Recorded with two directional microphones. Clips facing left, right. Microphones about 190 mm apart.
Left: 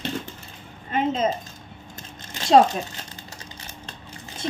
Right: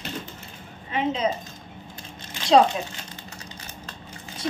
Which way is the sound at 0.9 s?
45° left (ahead or behind).